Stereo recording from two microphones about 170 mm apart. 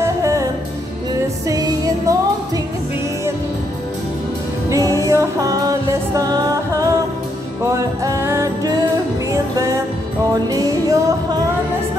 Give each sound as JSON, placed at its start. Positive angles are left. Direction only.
{"t": 0.0, "sound": "music", "side_deg": -20}
{"t": 1.5, "sound": "music", "side_deg": -20}
{"t": 4.6, "sound": "music", "side_deg": -20}
{"t": 8.0, "sound": "music", "side_deg": -15}
{"t": 10.3, "sound": "music", "side_deg": -20}